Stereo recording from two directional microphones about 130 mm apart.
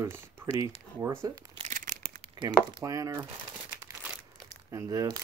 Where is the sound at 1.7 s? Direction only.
90° right.